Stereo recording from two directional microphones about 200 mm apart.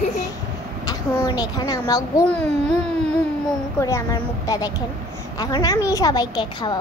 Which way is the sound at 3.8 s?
15° left (ahead or behind).